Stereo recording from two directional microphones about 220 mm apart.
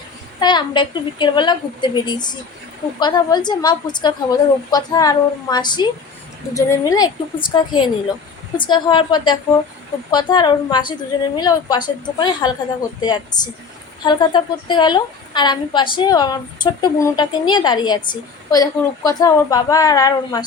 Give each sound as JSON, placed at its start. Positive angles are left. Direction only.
{"t": 0.3, "sound": "a woman's voice", "side_deg": 20}